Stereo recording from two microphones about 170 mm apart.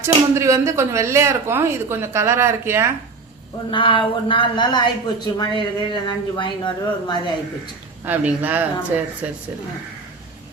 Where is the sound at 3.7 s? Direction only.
30° left (ahead or behind).